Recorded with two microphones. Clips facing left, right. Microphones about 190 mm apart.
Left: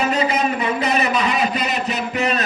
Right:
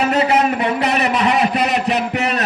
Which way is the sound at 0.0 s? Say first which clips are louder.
Right 4 dB; 70° right (ahead or behind).